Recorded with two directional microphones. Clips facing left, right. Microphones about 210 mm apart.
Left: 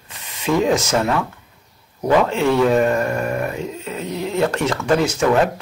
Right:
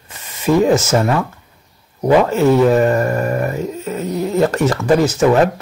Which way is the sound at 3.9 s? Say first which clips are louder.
Right 5 dB; 40° right (ahead or behind).